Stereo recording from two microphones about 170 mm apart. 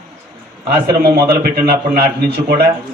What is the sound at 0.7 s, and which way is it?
Speech, 25° right (ahead or behind).